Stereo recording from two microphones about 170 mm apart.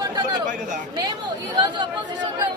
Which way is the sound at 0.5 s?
50° right (ahead or behind).